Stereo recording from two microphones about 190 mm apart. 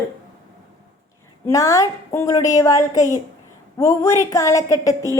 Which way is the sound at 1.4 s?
15° left (ahead or behind).